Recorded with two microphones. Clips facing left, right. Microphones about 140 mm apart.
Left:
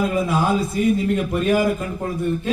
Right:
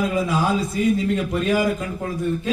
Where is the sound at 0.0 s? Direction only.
55° left (ahead or behind).